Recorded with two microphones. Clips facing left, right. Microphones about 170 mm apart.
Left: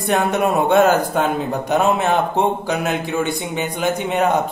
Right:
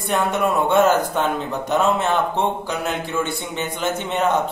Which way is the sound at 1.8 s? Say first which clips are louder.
Left 1 dB; 15° left (ahead or behind).